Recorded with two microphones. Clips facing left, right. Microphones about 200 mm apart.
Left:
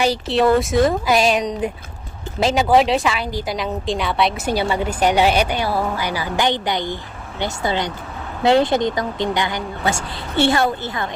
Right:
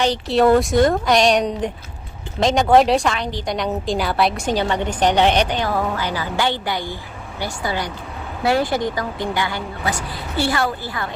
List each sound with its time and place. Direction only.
0.0 s a woman's voice: 5° left (ahead or behind); by 11.1 s 20° left (ahead or behind)